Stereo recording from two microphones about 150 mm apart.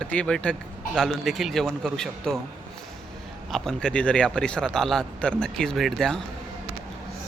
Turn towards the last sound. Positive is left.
turn(degrees=5)  # may be behind; listen again after turning